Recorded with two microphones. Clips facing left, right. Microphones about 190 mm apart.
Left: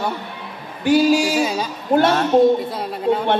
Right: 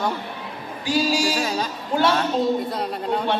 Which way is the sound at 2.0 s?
50° left (ahead or behind).